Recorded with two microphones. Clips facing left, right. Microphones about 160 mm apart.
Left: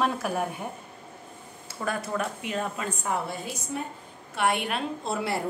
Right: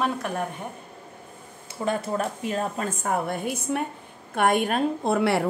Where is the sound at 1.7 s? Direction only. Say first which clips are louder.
Right 4 dB; 25° right (ahead or behind); by 3.8 s 60° right (ahead or behind).